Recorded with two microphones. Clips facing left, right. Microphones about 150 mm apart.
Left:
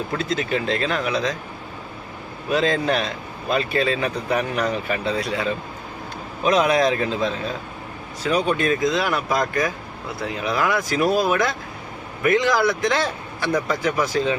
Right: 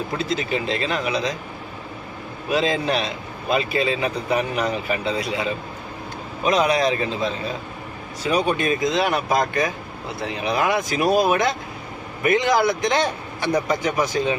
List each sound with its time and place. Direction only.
0.3 s a man's voice: centre (ahead or behind)
2.5 s a man's voice: 5° right (ahead or behind)
8.3 s speech: 15° right (ahead or behind)
8.9 s a man's voice: 25° right (ahead or behind)